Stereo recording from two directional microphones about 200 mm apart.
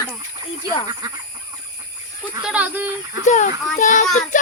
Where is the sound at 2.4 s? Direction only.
5° right (ahead or behind).